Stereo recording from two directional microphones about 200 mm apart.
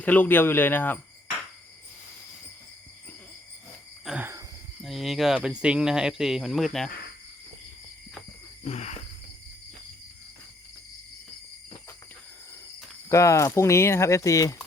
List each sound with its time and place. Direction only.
0.0 s speech: 10° left (ahead or behind)
4.0 s cricket: 5° right (ahead or behind)
4.8 s speech: centre (ahead or behind)
8.6 s a sound: 35° left (ahead or behind)
13.1 s speech: 15° left (ahead or behind)